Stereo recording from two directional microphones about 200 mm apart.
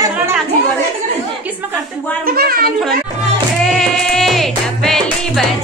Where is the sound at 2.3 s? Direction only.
50° right (ahead or behind).